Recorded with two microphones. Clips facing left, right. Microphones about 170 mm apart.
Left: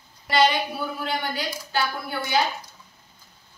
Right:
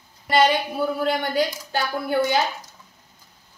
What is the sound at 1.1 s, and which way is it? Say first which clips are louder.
A woman's voice: right 6 dB; 50° right (ahead or behind).